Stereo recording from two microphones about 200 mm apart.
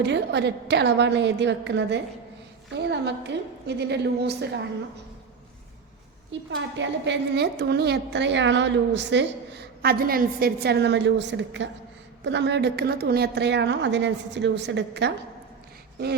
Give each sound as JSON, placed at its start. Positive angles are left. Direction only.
{"t": 0.0, "sound": "a woman's voice", "side_deg": -60}
{"t": 6.5, "sound": "a woman's voice", "side_deg": -65}